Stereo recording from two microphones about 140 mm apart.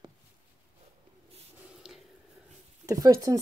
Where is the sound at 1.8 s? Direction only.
5° right (ahead or behind).